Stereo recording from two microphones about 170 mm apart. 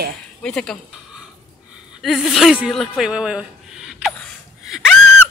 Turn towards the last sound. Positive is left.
turn(degrees=5)  # may be behind; listen again after turning